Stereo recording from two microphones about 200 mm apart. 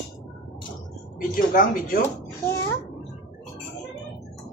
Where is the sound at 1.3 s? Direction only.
45° left (ahead or behind).